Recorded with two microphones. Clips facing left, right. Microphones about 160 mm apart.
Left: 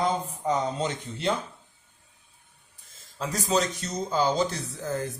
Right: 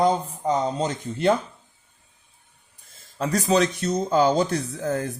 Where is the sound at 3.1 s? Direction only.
65° right (ahead or behind).